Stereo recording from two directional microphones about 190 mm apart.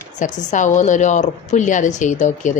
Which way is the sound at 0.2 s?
40° left (ahead or behind).